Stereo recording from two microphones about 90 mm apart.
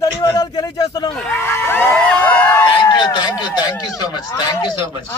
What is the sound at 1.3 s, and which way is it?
Speech, 30° left (ahead or behind).